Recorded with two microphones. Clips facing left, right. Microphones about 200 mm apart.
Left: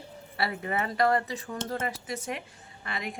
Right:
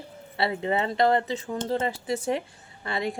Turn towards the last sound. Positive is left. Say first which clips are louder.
# right 7 dB
turn(degrees=-30)  # may be behind; listen again after turning